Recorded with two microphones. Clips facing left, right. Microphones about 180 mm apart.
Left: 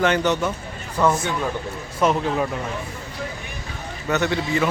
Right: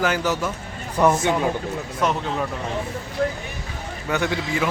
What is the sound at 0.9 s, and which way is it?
Speech, 15° right (ahead or behind).